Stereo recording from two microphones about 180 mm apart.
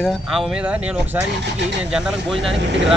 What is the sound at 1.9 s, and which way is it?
Speech, centre (ahead or behind).